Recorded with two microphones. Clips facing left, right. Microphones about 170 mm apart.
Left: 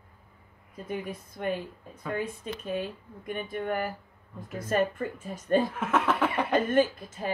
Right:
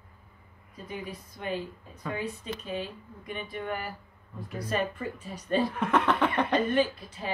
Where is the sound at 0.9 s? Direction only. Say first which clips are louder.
Left 4 dB; 55° left (ahead or behind).